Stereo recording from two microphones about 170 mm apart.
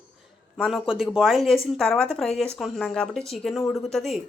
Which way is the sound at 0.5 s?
Centre (ahead or behind).